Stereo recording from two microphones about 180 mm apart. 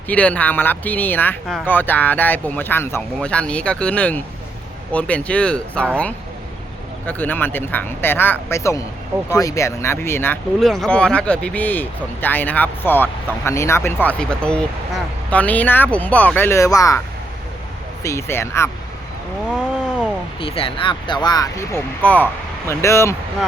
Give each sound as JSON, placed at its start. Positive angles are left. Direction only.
{"t": 0.1, "sound": "speech", "side_deg": 10}
{"t": 7.0, "sound": "speech", "side_deg": 10}
{"t": 10.6, "sound": "speech", "side_deg": 0}
{"t": 18.0, "sound": "speech", "side_deg": 15}
{"t": 20.4, "sound": "speech", "side_deg": 30}